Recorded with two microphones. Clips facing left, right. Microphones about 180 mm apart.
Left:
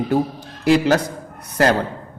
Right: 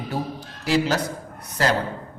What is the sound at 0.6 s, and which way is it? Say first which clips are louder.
Speech: left 6 dB; 55° left (ahead or behind).